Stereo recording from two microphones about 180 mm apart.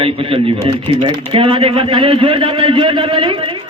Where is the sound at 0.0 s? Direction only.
30° right (ahead or behind).